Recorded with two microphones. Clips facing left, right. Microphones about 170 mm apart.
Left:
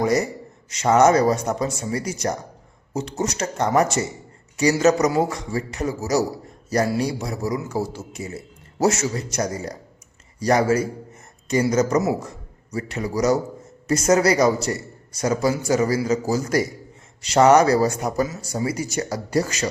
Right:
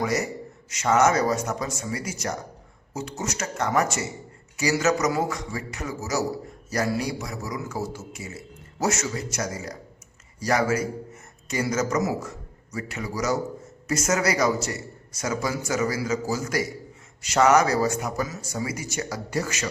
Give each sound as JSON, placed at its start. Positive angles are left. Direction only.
{"t": 0.0, "sound": "a man's voice", "side_deg": 35}